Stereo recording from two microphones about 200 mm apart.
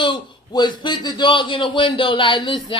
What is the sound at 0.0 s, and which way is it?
Speech, 25° left (ahead or behind).